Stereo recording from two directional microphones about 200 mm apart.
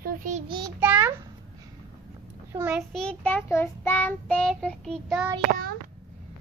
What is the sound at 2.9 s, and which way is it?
Child singing, 5° left (ahead or behind).